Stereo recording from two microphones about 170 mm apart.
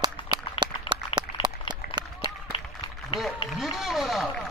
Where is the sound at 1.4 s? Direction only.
25° right (ahead or behind).